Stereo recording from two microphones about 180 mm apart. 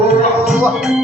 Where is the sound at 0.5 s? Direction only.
5° right (ahead or behind).